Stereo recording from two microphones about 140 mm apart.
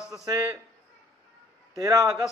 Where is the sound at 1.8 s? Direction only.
25° right (ahead or behind).